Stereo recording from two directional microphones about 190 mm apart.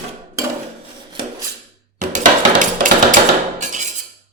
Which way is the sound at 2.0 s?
45° right (ahead or behind).